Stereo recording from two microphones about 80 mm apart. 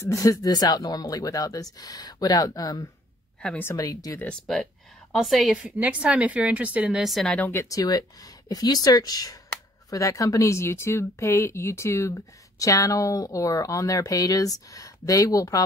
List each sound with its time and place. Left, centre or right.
0.0 s speech: left
4.3 s a woman's voice: centre
5.6 s a woman's voice: centre
7.0 s a woman's voice: centre
7.7 s speech: left